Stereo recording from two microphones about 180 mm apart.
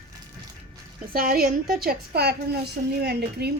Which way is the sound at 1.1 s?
55° right (ahead or behind).